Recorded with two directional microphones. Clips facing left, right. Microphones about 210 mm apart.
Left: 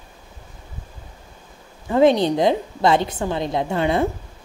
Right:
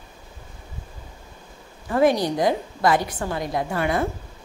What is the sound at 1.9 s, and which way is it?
A woman's voice, 25° left (ahead or behind).